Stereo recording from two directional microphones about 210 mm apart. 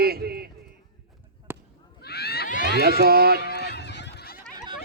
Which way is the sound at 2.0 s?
50° left (ahead or behind).